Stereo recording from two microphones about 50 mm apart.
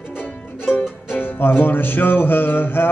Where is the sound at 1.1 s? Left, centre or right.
Left.